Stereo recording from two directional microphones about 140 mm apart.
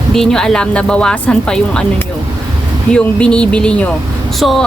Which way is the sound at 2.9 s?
5° left (ahead or behind).